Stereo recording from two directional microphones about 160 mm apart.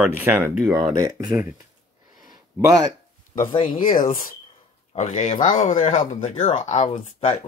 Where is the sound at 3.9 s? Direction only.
55° left (ahead or behind).